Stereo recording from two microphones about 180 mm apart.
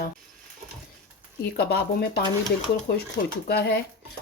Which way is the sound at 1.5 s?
60° left (ahead or behind).